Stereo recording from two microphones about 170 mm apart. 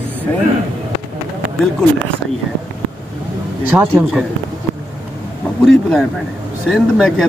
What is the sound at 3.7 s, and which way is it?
Speech, 15° right (ahead or behind).